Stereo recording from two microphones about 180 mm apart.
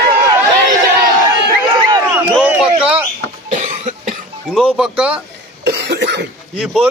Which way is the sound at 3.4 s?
40° right (ahead or behind).